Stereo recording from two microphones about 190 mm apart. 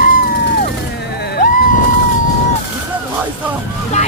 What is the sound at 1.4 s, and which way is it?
Screaming, 40° left (ahead or behind).